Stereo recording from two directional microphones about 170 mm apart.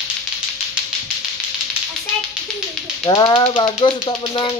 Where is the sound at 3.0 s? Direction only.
25° left (ahead or behind).